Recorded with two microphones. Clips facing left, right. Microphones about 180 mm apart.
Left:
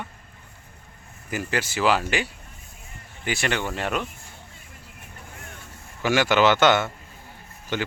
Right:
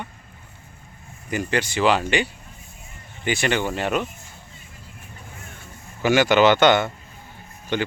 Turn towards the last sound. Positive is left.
turn(degrees=5)  # may be behind; listen again after turning